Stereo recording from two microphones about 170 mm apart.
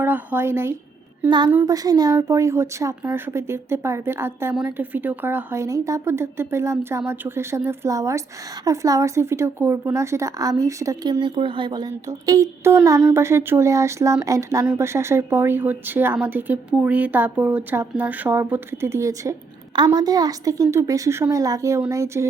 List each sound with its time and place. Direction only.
0.0 s speech: 10° right (ahead or behind)